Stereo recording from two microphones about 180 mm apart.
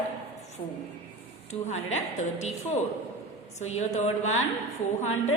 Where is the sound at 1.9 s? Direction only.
40° left (ahead or behind).